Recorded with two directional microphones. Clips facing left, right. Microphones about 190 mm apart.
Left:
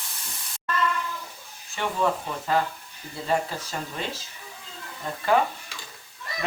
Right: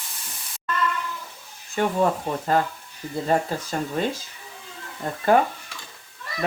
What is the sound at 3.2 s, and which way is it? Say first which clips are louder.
Speech: right 3 dB; 45° right (ahead or behind).